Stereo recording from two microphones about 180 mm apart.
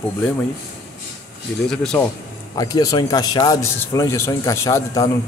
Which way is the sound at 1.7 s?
5° left (ahead or behind).